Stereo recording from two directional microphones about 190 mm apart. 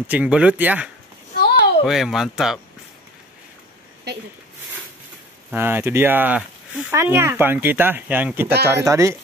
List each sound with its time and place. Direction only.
0.1 s speech: 5° right (ahead or behind)
1.3 s a sound: 55° left (ahead or behind)
1.9 s speech: centre (ahead or behind)
5.5 s speech: 10° right (ahead or behind)